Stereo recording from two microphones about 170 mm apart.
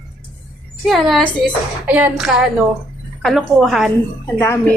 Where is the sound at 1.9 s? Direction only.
10° right (ahead or behind).